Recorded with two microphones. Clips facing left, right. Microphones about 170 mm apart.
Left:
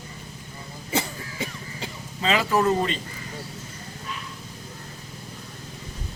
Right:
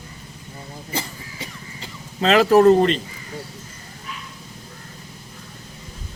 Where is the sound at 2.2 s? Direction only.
70° right (ahead or behind).